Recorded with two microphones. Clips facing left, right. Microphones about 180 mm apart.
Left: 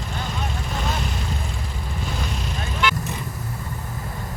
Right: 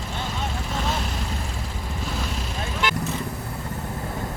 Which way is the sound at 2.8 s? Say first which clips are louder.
Left 3 dB; 45° right (ahead or behind).